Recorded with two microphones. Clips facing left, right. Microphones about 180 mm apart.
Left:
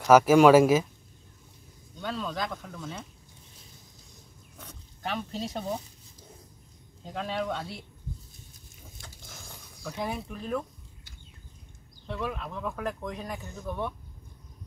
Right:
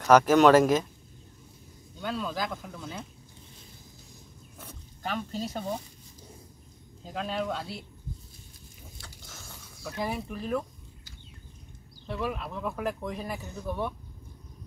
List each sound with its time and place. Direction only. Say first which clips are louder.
0.0 s speech: left 1 dB; 5° left (ahead or behind)
2.0 s speech: right 1 dB; 5° right (ahead or behind)
4.6 s pig: right 1 dB; centre (ahead or behind)
7.1 s speech: even; centre (ahead or behind)
9.0 s biting: left 2 dB; 15° left (ahead or behind)
9.8 s speech: right 1 dB; 5° right (ahead or behind)
12.1 s speech: right 1 dB; 5° right (ahead or behind)